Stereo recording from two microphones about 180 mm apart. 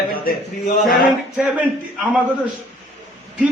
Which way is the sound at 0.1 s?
55° left (ahead or behind).